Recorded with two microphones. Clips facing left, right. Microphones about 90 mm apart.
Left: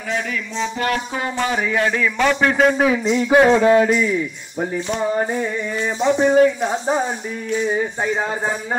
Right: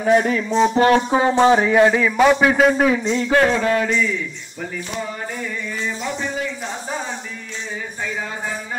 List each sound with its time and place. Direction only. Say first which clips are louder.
0.0 s speech: right 8 dB; 35° right (ahead or behind); by 2.5 s 15° right (ahead or behind)
2.5 s speech: even; centre (ahead or behind)
3.2 s a sound: left 5 dB; 15° left (ahead or behind)
3.5 s a man's voice: left 5 dB; 20° left (ahead or behind)
5.9 s a man's voice: left 9 dB; 25° left (ahead or behind)
6.2 s speech: left 15 dB; 50° left (ahead or behind)
7.7 s speech: left 7 dB; 40° left (ahead or behind)